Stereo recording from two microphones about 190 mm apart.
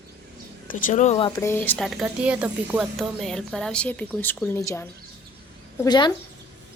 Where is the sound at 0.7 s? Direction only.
40° left (ahead or behind).